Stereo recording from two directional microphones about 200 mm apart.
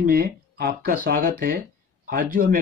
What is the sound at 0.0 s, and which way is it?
Speech, 50° right (ahead or behind).